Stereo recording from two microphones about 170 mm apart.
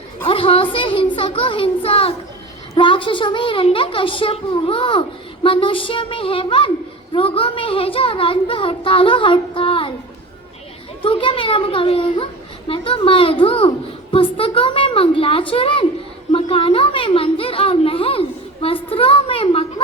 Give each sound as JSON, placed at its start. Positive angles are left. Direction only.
{"t": 0.3, "sound": "a child's voice", "side_deg": 30}
{"t": 11.0, "sound": "a child's voice", "side_deg": 30}
{"t": 16.3, "sound": "a sound", "side_deg": 35}